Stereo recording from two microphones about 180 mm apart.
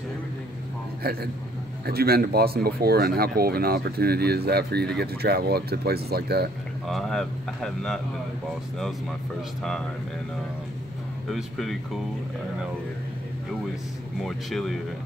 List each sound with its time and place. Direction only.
1.0 s speech: 55° right (ahead or behind)
6.9 s speech: centre (ahead or behind)
11.2 s speech: centre (ahead or behind)